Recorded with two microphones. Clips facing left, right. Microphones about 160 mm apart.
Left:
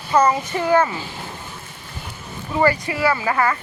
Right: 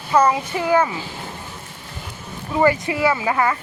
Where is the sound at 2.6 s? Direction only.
20° right (ahead or behind).